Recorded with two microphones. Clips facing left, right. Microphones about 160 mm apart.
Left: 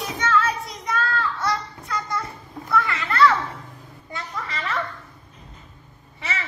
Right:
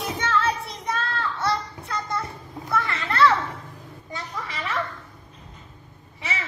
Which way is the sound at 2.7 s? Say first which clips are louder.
Left 2 dB; 30° right (ahead or behind).